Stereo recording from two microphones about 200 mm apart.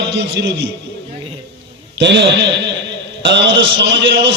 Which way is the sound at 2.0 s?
60° right (ahead or behind).